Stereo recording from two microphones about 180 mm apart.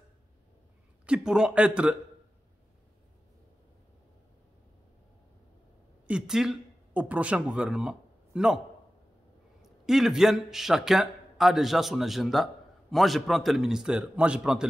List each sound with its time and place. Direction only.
1.0 s a man's voice: 5° right (ahead or behind)
6.0 s speech: 5° right (ahead or behind)
9.8 s a man's voice: centre (ahead or behind)